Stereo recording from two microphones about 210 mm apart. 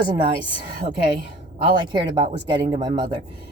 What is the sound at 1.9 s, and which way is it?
Speech, 20° right (ahead or behind).